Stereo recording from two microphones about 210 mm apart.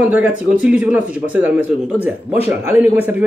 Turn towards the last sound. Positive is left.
turn(degrees=-10)  # may be behind; listen again after turning